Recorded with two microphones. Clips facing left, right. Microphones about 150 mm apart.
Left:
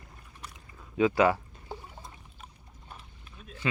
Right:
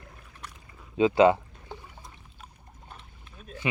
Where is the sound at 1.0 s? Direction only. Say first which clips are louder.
Right 4 dB; 25° right (ahead or behind).